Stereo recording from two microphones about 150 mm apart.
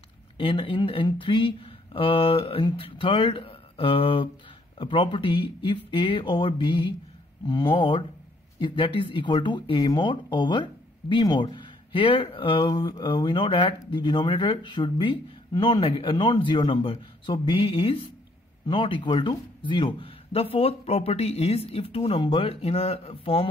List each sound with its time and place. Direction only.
0.4 s speech: 35° left (ahead or behind)